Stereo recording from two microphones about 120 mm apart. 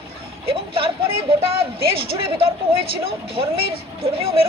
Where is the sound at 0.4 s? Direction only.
50° right (ahead or behind).